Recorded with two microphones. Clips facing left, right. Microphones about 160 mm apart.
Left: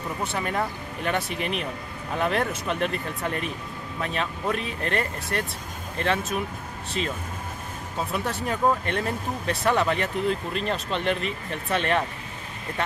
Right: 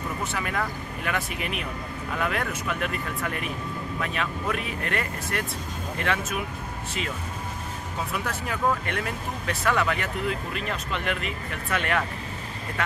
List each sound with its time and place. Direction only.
0.3 s speech: 30° left (ahead or behind)
8.1 s speech: 30° left (ahead or behind)